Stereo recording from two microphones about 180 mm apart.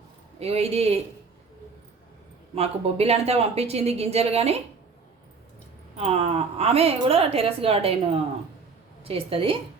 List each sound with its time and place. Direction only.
0.3 s a woman's voice: 35° right (ahead or behind)
2.6 s a woman's voice: 35° right (ahead or behind)
6.0 s a woman's voice: 35° right (ahead or behind)